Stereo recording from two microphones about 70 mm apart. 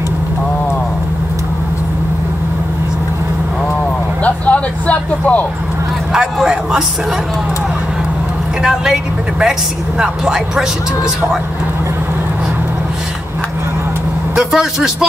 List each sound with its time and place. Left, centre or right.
4.2 s vehicle: centre
6.1 s a woman's voice: centre
8.6 s a woman's voice: centre
14.3 s a man's voice: centre